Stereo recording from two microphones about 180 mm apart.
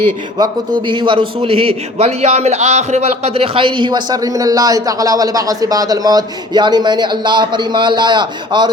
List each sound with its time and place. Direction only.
0.9 s a man's voice: 25° right (ahead or behind)